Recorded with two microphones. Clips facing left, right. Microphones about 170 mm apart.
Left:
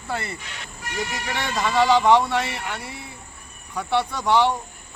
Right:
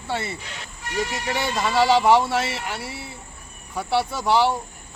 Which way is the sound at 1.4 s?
5° right (ahead or behind).